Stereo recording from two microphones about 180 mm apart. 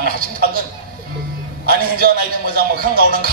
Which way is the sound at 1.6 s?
55° right (ahead or behind).